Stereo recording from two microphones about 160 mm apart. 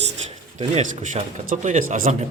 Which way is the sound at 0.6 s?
45° right (ahead or behind).